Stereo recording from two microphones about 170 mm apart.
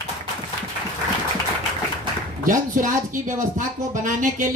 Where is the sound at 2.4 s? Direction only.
50° right (ahead or behind).